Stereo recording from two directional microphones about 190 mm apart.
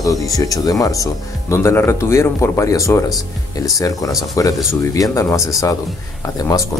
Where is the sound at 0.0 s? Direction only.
20° left (ahead or behind).